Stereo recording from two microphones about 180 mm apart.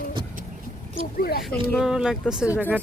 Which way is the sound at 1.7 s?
5° right (ahead or behind).